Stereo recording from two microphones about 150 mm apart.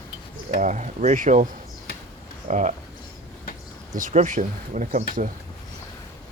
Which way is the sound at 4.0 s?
60° right (ahead or behind).